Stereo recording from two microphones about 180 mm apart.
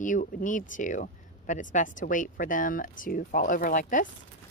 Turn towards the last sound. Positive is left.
turn(degrees=45)  # may be behind; listen again after turning